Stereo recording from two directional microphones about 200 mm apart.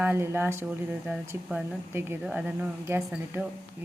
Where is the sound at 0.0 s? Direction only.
10° right (ahead or behind).